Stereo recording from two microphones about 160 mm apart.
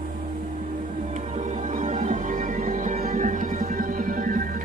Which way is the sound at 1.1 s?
50° right (ahead or behind).